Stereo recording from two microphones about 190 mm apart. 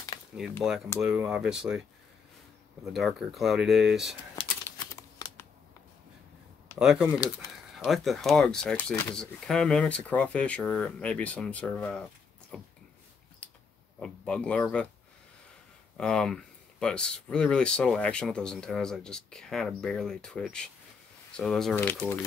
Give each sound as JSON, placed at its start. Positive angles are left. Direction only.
{"t": 0.3, "sound": "speech", "side_deg": -5}
{"t": 2.9, "sound": "speech", "side_deg": 0}
{"t": 6.8, "sound": "speech", "side_deg": -5}
{"t": 13.9, "sound": "speech", "side_deg": 5}
{"t": 16.0, "sound": "speech", "side_deg": 5}